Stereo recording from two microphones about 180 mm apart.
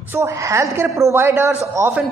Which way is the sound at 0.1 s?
15° right (ahead or behind).